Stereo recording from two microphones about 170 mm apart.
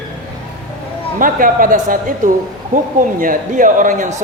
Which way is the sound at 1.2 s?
55° right (ahead or behind).